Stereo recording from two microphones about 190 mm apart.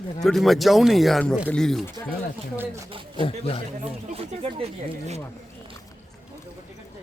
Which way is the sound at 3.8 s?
30° right (ahead or behind).